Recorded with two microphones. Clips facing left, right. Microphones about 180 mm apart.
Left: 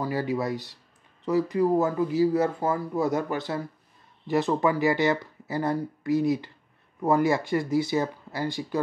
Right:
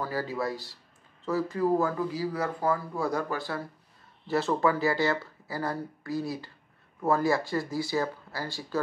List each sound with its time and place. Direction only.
0.0 s speech: 20° left (ahead or behind)